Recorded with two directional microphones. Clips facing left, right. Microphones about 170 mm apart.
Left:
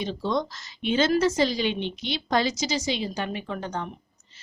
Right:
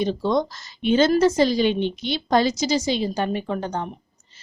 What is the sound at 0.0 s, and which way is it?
A woman's voice, 45° right (ahead or behind).